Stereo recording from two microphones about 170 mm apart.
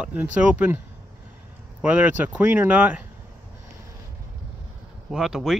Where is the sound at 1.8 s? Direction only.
10° right (ahead or behind).